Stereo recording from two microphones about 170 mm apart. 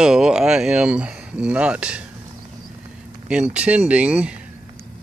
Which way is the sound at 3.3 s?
5° right (ahead or behind).